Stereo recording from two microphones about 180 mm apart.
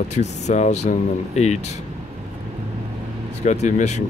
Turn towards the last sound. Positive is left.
turn(degrees=40)  # may be behind; listen again after turning